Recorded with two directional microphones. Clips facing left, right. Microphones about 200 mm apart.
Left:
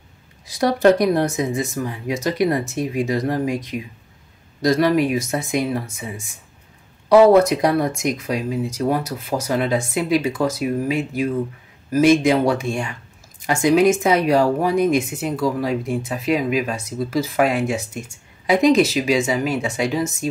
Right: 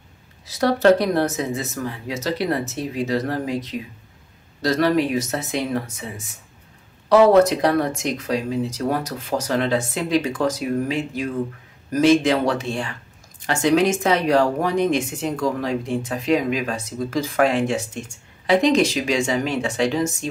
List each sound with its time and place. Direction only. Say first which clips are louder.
0.5 s speech: left 1 dB; 15° left (ahead or behind)